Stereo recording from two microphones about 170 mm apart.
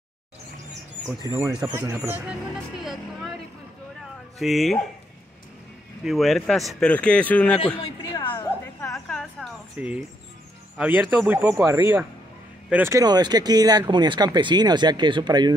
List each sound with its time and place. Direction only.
1.0 s speech: 20° right (ahead or behind)
4.4 s speech: centre (ahead or behind)
6.0 s speech: centre (ahead or behind)
7.8 s a sound: 25° left (ahead or behind)
9.8 s speech: 5° right (ahead or behind); by 15.5 s 25° right (ahead or behind)